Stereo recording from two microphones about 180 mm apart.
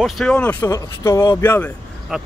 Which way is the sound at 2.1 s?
5° right (ahead or behind).